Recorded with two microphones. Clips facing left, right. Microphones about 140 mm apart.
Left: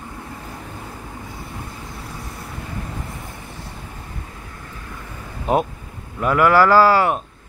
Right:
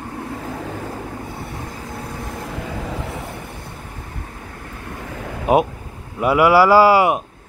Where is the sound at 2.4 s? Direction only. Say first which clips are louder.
Right 4 dB; 90° right.